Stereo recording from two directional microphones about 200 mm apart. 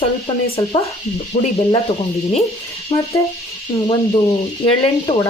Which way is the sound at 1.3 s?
35° left (ahead or behind).